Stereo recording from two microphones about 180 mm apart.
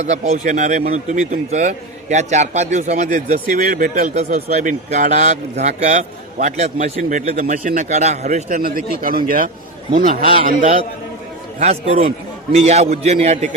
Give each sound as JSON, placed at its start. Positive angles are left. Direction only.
{"t": 0.0, "sound": "speech", "side_deg": -40}
{"t": 3.6, "sound": "a man's voice", "side_deg": -50}
{"t": 11.6, "sound": "speech", "side_deg": -35}